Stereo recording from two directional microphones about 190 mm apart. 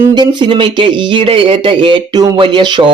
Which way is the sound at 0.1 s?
25° right (ahead or behind).